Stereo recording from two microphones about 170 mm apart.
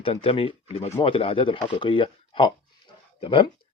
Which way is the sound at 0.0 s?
35° left (ahead or behind).